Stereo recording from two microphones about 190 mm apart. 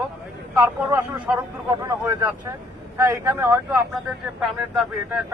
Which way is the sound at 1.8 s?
20° right (ahead or behind).